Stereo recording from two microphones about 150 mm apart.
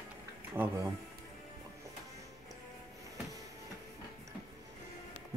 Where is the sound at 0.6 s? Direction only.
10° right (ahead or behind).